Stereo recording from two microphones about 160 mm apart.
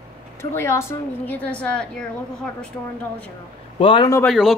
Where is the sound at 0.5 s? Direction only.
15° left (ahead or behind).